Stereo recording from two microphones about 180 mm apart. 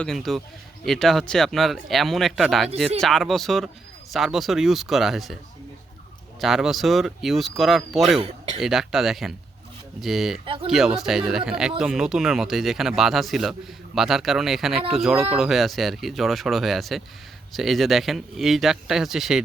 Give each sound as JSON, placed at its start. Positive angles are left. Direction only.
{"t": 0.0, "sound": "speech", "side_deg": 0}
{"t": 6.4, "sound": "speech", "side_deg": 0}
{"t": 8.2, "sound": "speech", "side_deg": -30}
{"t": 8.6, "sound": "speech", "side_deg": 0}
{"t": 10.4, "sound": "speech", "side_deg": -30}
{"t": 10.7, "sound": "speech", "side_deg": 0}